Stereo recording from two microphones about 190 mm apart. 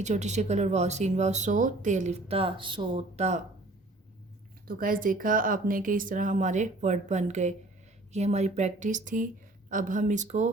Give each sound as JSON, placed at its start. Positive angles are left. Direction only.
{"t": 0.0, "sound": "speech", "side_deg": -35}
{"t": 4.6, "sound": "speech", "side_deg": -50}